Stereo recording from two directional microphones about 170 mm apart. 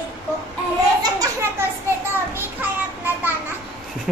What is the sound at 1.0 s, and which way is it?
Children playing, 15° right (ahead or behind).